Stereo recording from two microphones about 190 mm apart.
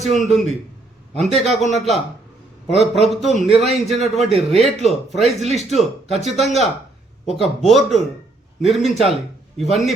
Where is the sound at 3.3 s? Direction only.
30° right (ahead or behind).